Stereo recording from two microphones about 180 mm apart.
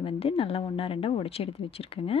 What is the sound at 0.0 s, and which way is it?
Speech, 30° left (ahead or behind).